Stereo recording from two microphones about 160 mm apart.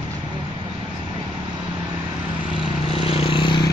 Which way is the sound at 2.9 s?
35° left (ahead or behind).